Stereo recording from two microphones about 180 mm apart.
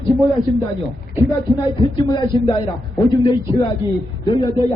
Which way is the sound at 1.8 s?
25° left (ahead or behind).